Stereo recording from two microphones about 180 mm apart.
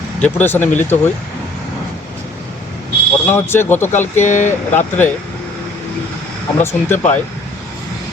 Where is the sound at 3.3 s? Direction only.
15° left (ahead or behind).